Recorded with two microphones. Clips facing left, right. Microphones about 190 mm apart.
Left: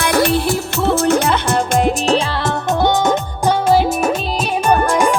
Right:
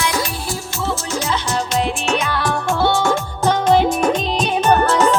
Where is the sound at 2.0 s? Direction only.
30° left (ahead or behind).